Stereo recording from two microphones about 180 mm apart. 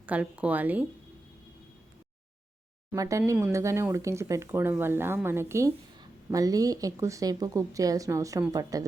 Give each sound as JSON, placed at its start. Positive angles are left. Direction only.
{"t": 0.0, "sound": "speech", "side_deg": -10}
{"t": 2.9, "sound": "speech", "side_deg": -20}